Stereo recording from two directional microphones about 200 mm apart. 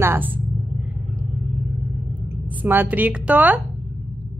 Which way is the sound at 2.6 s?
10° right (ahead or behind).